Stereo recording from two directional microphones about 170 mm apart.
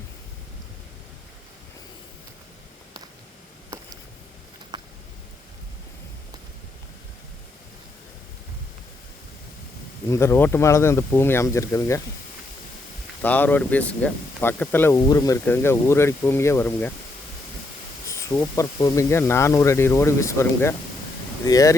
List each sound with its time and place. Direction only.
4.7 s a sound: 25° right (ahead or behind)
10.1 s speech: 15° left (ahead or behind)
13.2 s speech: 10° left (ahead or behind)
18.0 s speech: 15° left (ahead or behind)